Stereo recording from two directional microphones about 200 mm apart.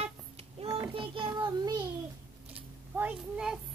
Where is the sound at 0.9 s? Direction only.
25° right (ahead or behind).